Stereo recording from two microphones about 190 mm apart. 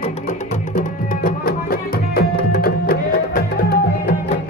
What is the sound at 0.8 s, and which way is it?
Music, 50° left (ahead or behind).